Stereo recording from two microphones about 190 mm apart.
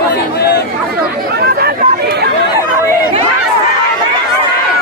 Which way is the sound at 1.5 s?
55° right (ahead or behind).